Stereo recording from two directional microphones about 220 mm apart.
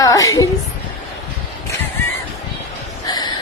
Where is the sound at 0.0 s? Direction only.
15° left (ahead or behind).